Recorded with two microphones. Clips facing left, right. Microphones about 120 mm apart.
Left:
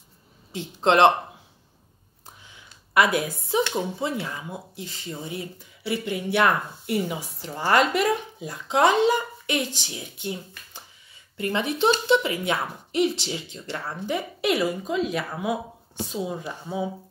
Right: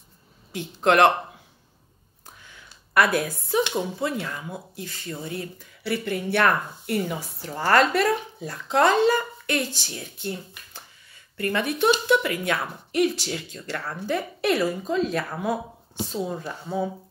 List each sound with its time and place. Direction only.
0.5 s speech: 20° left (ahead or behind)
2.4 s a sound: 20° left (ahead or behind)
3.7 s speech: 15° left (ahead or behind)